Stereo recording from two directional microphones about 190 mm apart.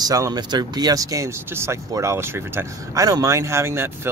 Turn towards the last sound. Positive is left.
turn(degrees=-15)  # may be behind; listen again after turning